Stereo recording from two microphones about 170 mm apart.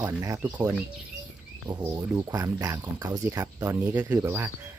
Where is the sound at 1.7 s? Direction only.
20° right (ahead or behind).